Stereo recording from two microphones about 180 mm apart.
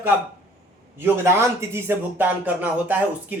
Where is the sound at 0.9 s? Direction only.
15° right (ahead or behind).